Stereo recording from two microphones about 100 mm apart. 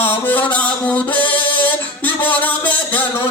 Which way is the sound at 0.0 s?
20° left (ahead or behind).